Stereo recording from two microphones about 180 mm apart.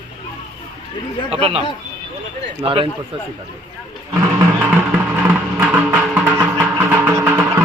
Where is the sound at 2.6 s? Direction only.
30° right (ahead or behind).